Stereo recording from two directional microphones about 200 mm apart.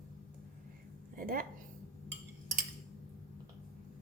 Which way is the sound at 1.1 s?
45° right (ahead or behind).